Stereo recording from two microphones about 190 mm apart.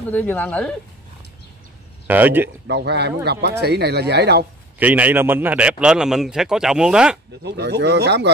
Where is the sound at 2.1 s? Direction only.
10° right (ahead or behind).